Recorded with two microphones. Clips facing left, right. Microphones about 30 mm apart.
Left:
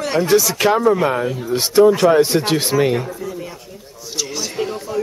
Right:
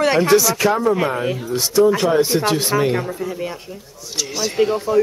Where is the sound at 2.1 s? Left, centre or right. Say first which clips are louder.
Left 2 dB; left.